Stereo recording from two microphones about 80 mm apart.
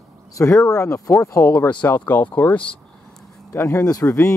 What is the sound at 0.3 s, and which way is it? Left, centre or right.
Speech, left.